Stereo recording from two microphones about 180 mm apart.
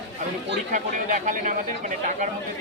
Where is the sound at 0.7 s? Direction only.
45° right (ahead or behind).